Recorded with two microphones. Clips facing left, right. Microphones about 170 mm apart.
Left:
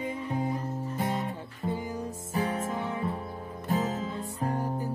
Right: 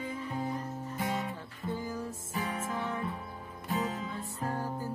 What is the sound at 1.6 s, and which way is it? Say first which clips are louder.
Music: left 3 dB; 20° left (ahead or behind).